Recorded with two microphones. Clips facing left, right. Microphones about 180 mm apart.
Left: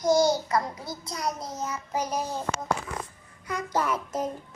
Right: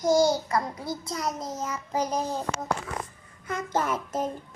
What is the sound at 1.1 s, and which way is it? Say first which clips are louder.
Child singing: left 1 dB; 25° right (ahead or behind).